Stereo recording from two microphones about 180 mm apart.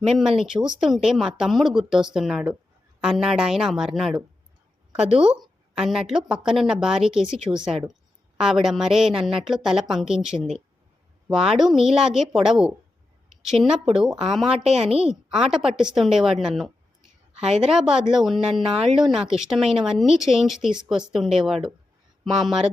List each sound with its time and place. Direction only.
0.2 s a woman's voice: centre (ahead or behind)
4.9 s speech: 35° right (ahead or behind)
5.7 s a woman's voice: centre (ahead or behind)